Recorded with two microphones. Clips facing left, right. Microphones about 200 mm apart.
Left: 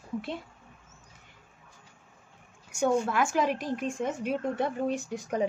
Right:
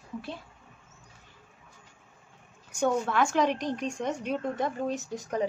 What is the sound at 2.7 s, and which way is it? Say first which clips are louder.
A woman's voice: left 1 dB; 10° left (ahead or behind).